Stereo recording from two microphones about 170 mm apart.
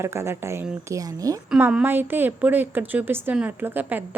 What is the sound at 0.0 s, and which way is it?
A woman's voice, 15° right (ahead or behind).